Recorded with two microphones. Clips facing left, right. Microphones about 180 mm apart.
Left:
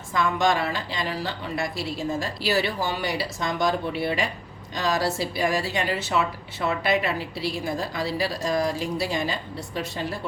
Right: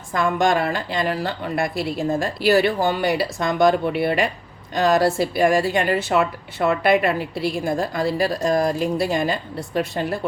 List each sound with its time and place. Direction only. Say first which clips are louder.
0.1 s a woman's voice: right 4 dB; 50° right (ahead or behind)